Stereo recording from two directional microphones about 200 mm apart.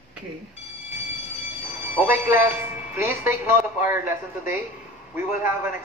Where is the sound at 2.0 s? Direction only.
10° right (ahead or behind).